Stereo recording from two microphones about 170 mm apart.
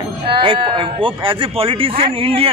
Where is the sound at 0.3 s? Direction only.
30° right (ahead or behind).